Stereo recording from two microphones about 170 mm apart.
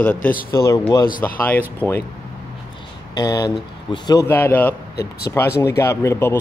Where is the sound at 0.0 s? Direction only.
10° left (ahead or behind).